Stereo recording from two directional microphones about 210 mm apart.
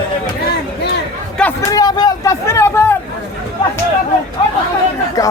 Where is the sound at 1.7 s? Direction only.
20° left (ahead or behind).